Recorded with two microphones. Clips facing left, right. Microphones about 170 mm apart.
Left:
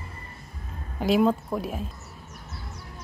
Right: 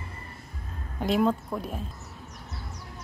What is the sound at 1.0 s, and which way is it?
Speech, 5° left (ahead or behind).